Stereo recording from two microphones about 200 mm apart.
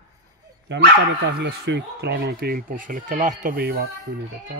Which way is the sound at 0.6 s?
60° right (ahead or behind).